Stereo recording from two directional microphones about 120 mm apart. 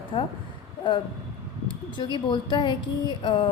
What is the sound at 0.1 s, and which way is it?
Speech, 40° left (ahead or behind).